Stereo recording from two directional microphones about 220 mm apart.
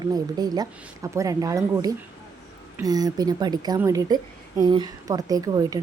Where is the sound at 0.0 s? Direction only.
15° right (ahead or behind).